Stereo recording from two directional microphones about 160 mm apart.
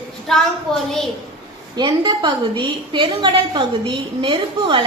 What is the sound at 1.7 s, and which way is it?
A woman's voice, 25° right (ahead or behind).